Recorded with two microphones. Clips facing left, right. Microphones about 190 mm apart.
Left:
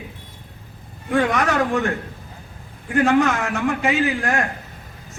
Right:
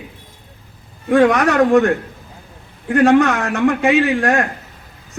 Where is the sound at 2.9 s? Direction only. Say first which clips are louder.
Right 5 dB; 70° right (ahead or behind).